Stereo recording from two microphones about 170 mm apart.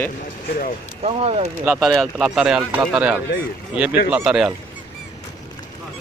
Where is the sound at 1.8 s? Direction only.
Centre (ahead or behind).